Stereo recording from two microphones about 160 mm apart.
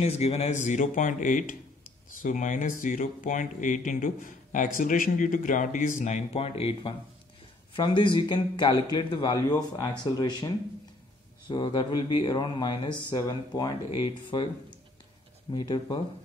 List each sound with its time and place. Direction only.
0.0 s speech: 40° left (ahead or behind); by 13.7 s 20° left (ahead or behind)
13.8 s speech: 35° left (ahead or behind)
15.5 s speech: 30° left (ahead or behind)